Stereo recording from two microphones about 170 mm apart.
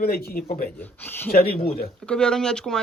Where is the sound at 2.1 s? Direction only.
5° left (ahead or behind).